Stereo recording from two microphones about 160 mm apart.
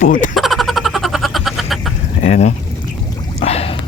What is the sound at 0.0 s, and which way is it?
Speech, 55° left (ahead or behind).